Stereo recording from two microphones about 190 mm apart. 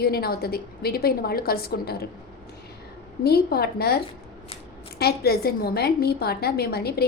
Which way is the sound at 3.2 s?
55° left (ahead or behind).